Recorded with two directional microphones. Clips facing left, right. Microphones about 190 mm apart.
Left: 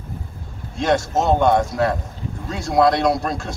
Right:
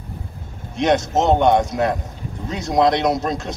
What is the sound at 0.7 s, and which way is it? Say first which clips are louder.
Speech: right 2 dB; 20° right (ahead or behind).